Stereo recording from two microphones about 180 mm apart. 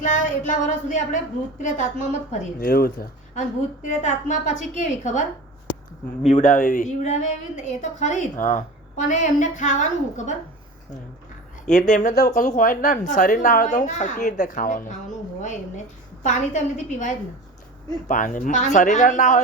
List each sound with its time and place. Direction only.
0.0 s speech: 45° left (ahead or behind)
2.6 s speech: 55° left (ahead or behind)
3.8 s speech: 40° left (ahead or behind)
6.2 s speech: 40° left (ahead or behind)
11.6 s speech: 45° left (ahead or behind)